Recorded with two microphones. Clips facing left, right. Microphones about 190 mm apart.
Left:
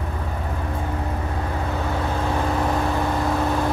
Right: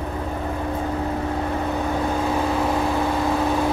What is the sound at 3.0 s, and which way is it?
Vehicle, 5° right (ahead or behind).